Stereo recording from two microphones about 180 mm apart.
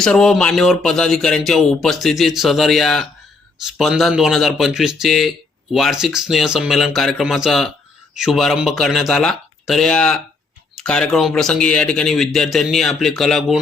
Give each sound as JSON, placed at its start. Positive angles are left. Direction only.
{"t": 0.0, "sound": "speech", "side_deg": 5}